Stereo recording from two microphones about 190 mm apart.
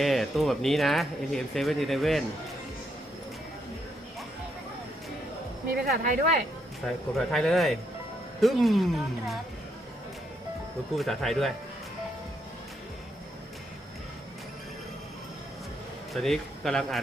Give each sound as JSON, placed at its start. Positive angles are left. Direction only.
{"t": 0.0, "sound": "speech", "side_deg": 0}
{"t": 5.7, "sound": "speech", "side_deg": -45}
{"t": 6.8, "sound": "speech", "side_deg": 5}
{"t": 10.9, "sound": "speech", "side_deg": 0}
{"t": 16.1, "sound": "speech", "side_deg": 0}